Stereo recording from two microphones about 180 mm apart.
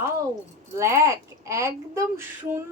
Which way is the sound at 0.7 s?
15° right (ahead or behind).